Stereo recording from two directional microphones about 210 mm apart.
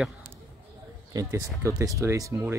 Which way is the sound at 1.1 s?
15° right (ahead or behind).